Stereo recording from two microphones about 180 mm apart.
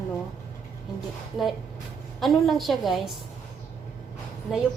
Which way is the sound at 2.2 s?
Centre (ahead or behind).